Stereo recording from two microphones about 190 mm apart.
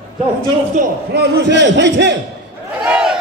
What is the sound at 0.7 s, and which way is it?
A man's voice, 50° right (ahead or behind).